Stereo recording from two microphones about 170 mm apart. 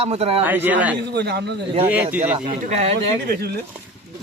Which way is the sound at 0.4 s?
10° right (ahead or behind).